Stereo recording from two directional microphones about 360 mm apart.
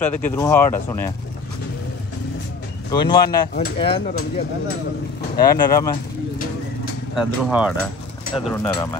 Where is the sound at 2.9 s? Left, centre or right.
Centre.